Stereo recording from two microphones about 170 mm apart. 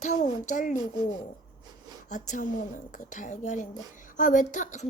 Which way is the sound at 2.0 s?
45° left (ahead or behind).